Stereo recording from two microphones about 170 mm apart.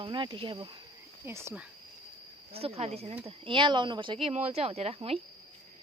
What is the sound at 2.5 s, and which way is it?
Speech, 35° right (ahead or behind).